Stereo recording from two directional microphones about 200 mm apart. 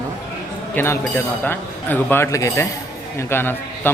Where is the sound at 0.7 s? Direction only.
10° left (ahead or behind).